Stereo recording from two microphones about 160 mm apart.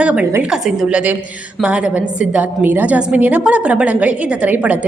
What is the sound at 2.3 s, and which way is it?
A woman's voice, 10° right (ahead or behind).